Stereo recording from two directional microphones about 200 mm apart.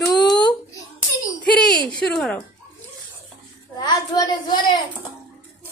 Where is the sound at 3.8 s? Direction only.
20° left (ahead or behind).